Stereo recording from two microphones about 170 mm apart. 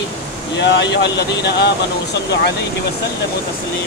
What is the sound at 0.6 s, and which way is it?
Speech, 90° left.